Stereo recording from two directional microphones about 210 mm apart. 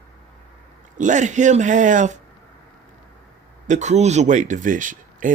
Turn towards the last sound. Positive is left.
turn(degrees=-40)  # may be behind; listen again after turning